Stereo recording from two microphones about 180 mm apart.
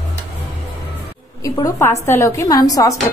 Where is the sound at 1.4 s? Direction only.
15° left (ahead or behind).